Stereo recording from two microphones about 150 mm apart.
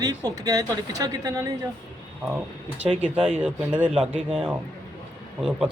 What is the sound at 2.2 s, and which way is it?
Speech, 5° right (ahead or behind).